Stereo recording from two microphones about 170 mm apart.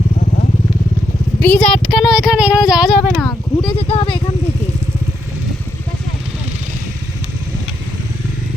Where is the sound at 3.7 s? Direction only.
35° left (ahead or behind).